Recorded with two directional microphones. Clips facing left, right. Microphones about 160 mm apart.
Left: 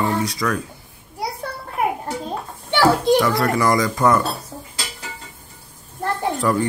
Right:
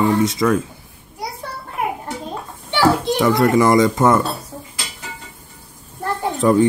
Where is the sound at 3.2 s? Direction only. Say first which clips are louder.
Right 4 dB; 20° right (ahead or behind).